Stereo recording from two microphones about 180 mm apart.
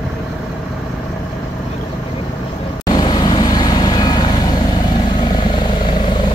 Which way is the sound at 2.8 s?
25° left (ahead or behind).